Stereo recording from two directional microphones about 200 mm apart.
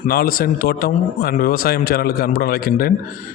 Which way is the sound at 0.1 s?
45° left (ahead or behind).